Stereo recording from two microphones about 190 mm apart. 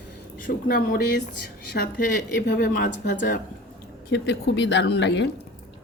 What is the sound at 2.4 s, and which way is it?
Speech, 55° left (ahead or behind).